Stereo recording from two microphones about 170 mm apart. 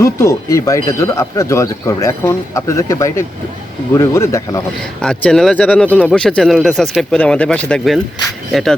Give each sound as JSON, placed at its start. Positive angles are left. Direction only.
{"t": 0.0, "sound": "speech", "side_deg": 20}
{"t": 5.0, "sound": "speech", "side_deg": 5}